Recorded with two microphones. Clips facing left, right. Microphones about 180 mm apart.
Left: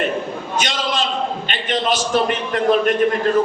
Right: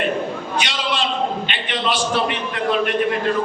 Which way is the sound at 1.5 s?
45° left (ahead or behind).